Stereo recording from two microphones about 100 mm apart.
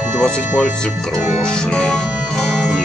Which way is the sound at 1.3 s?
10° left (ahead or behind).